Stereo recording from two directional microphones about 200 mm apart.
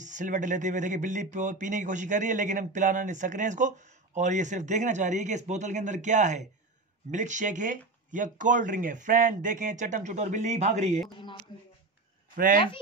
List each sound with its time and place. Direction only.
0.0 s speech: 40° right (ahead or behind)
11.5 s speech: 25° left (ahead or behind)